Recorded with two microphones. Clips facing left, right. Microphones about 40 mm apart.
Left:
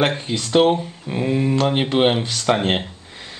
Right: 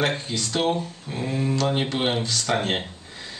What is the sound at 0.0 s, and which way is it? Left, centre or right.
Speech, left.